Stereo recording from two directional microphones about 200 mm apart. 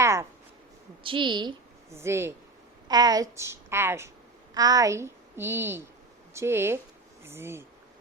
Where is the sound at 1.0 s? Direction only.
25° right (ahead or behind).